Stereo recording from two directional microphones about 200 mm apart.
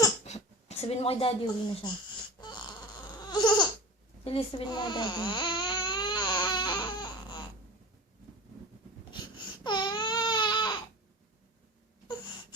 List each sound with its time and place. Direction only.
0.3 s speech: 30° left (ahead or behind)
2.4 s a sound: 20° left (ahead or behind)
4.2 s baby cry: 30° left (ahead or behind)
9.6 s baby cry: 20° left (ahead or behind)